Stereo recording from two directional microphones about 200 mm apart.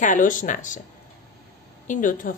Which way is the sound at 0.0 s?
40° left (ahead or behind).